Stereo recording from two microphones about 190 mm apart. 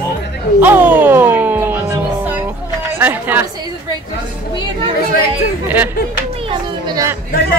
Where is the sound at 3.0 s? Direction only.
10° right (ahead or behind).